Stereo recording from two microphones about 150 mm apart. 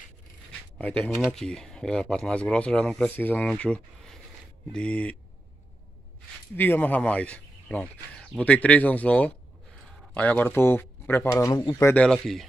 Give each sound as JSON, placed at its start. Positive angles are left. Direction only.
{"t": 0.7, "sound": "speech", "side_deg": 10}
{"t": 6.5, "sound": "speech", "side_deg": 15}
{"t": 11.9, "sound": "speech", "side_deg": 5}